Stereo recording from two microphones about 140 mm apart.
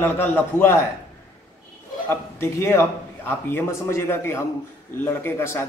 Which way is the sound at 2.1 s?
20° left (ahead or behind).